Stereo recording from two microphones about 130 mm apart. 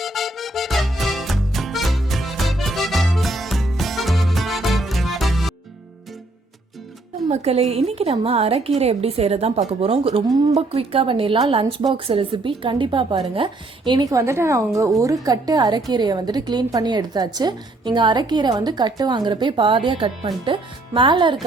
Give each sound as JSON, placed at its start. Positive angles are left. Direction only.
{"t": 0.0, "sound": "music", "side_deg": 0}
{"t": 7.3, "sound": "a woman's voice", "side_deg": -55}